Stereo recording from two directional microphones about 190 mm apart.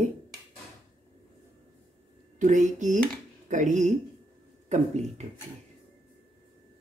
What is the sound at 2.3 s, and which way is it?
Speech, 40° right (ahead or behind).